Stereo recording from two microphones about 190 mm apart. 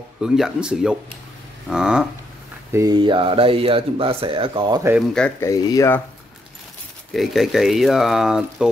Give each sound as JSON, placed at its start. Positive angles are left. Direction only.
{"t": 0.2, "sound": "speech", "side_deg": -5}
{"t": 2.7, "sound": "speech", "side_deg": -20}
{"t": 5.1, "sound": "speech", "side_deg": 5}
{"t": 5.5, "sound": "speech", "side_deg": 15}
{"t": 7.1, "sound": "speech", "side_deg": 0}